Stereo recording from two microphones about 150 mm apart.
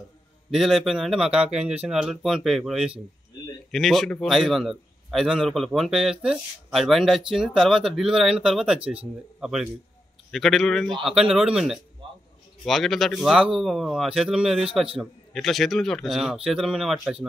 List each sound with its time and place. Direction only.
0.5 s a man's voice: centre (ahead or behind)
12.0 s a sound: 35° right (ahead or behind)
12.6 s a man's voice: centre (ahead or behind)